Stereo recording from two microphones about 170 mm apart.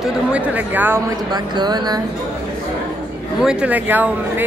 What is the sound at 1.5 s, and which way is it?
Speech, 25° right (ahead or behind).